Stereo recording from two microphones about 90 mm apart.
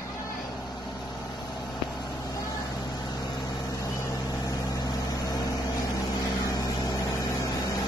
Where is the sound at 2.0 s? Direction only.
50° left (ahead or behind).